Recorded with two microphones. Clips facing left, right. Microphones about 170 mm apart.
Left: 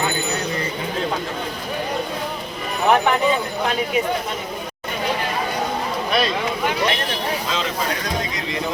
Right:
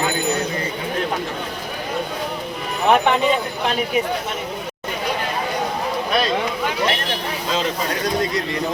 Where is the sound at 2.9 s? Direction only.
20° right (ahead or behind).